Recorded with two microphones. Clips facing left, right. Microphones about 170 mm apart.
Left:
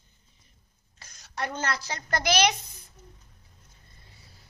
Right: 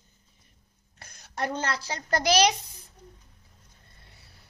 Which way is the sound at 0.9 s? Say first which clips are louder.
Right 1 dB; 60° right (ahead or behind).